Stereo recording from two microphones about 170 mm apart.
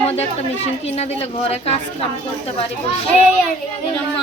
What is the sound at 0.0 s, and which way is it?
Speech, 35° left (ahead or behind).